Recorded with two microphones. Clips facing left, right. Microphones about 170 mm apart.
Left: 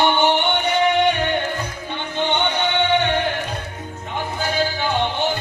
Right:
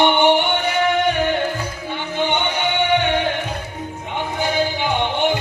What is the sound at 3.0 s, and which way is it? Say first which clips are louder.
Music: right 1 dB; 15° right (ahead or behind).